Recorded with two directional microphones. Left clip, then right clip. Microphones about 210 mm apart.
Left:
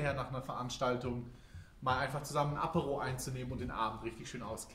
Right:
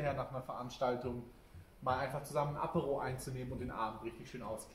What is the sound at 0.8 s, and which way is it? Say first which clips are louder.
Speech: even; 15° left (ahead or behind).